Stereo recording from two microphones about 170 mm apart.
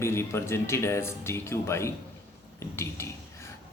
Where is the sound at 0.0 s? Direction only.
15° left (ahead or behind).